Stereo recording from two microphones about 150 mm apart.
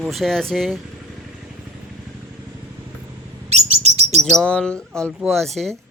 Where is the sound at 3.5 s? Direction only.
45° right (ahead or behind).